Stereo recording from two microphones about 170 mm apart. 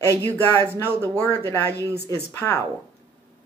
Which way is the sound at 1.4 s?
15° left (ahead or behind).